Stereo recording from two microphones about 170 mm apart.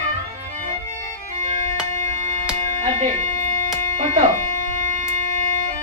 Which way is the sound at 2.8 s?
40° right (ahead or behind).